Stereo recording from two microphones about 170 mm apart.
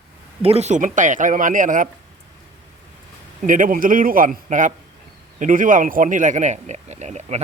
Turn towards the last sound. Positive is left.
turn(degrees=-40)  # may be behind; listen again after turning